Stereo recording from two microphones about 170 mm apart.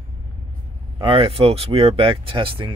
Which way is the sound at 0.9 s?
30° right (ahead or behind).